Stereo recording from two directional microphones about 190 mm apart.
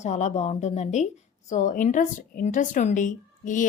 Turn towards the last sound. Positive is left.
turn(degrees=40)  # may be behind; listen again after turning